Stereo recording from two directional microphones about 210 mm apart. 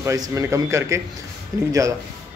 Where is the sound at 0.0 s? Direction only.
15° right (ahead or behind).